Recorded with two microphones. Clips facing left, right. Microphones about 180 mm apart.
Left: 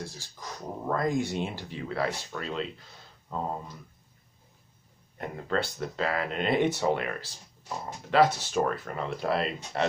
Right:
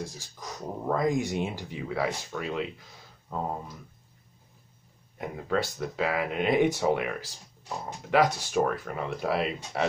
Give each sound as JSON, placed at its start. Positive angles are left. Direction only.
{"t": 0.0, "sound": "speech", "side_deg": -20}
{"t": 3.3, "sound": "a sound", "side_deg": -5}
{"t": 5.1, "sound": "speech", "side_deg": -5}